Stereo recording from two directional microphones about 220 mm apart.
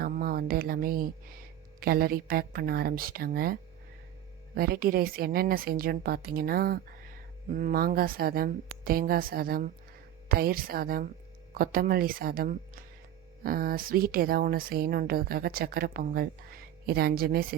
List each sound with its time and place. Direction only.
0.0 s a woman's voice: 40° right (ahead or behind)